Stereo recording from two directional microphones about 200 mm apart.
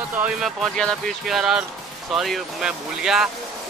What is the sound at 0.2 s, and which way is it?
Speech, centre (ahead or behind).